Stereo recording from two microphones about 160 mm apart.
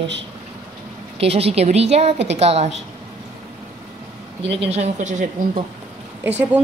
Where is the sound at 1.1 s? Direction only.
40° right (ahead or behind).